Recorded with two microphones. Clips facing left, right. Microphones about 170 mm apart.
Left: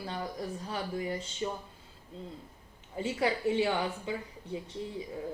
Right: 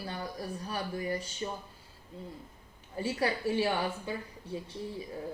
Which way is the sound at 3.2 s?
20° left (ahead or behind).